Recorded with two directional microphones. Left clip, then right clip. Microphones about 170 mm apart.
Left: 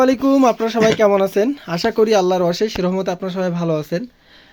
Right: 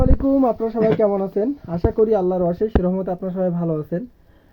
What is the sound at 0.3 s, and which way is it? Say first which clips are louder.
Speech: left 4 dB; 15° left (ahead or behind).